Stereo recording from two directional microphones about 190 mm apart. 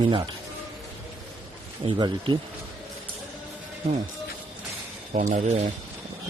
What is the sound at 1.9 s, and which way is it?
Speech, 25° right (ahead or behind).